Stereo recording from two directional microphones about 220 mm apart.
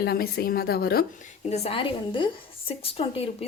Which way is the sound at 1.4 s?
30° left (ahead or behind).